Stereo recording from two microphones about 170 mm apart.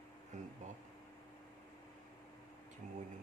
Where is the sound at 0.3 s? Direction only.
45° right (ahead or behind).